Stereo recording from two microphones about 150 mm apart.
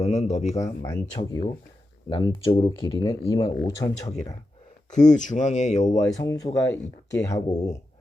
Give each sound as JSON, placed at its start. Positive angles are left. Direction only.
{"t": 0.0, "sound": "a man's voice", "side_deg": 45}
{"t": 0.6, "sound": "speech", "side_deg": 25}
{"t": 4.9, "sound": "speech", "side_deg": 55}
{"t": 6.0, "sound": "speech", "side_deg": 20}